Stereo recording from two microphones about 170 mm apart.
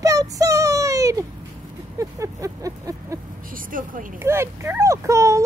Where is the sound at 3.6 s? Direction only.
55° right (ahead or behind).